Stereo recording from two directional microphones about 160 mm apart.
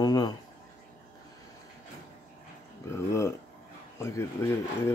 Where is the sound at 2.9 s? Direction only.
15° left (ahead or behind).